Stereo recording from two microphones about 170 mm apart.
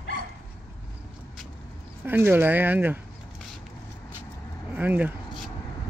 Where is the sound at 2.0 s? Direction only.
10° right (ahead or behind).